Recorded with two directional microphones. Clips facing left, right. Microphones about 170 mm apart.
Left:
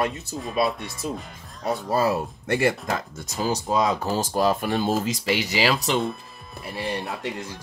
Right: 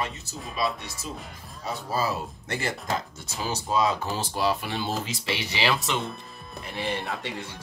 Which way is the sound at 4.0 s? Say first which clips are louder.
Left 5 dB; 45° left (ahead or behind).